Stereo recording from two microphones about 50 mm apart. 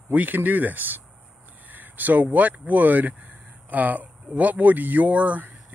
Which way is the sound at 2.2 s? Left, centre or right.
Right.